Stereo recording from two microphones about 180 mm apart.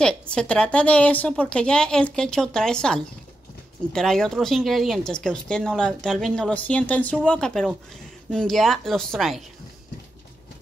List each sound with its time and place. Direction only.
0.0 s speech: 5° left (ahead or behind)